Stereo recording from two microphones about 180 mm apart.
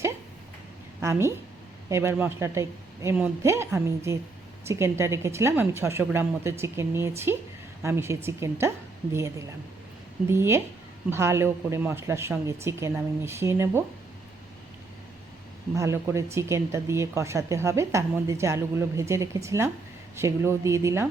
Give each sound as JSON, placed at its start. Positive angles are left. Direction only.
{"t": 1.9, "sound": "speech", "side_deg": -15}
{"t": 10.2, "sound": "speech", "side_deg": -15}
{"t": 15.7, "sound": "speech", "side_deg": -15}